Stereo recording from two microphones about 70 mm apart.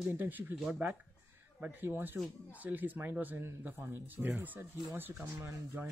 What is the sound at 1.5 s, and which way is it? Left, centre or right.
Speech, right.